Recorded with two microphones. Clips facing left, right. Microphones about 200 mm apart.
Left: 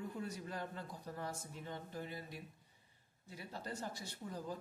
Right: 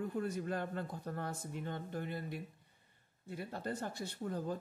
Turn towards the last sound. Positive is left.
turn(degrees=-55)  # may be behind; listen again after turning